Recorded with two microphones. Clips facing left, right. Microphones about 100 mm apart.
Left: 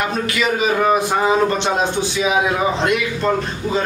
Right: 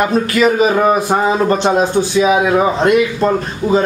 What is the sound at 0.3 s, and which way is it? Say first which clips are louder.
Speech: right 8 dB; 45° right (ahead or behind).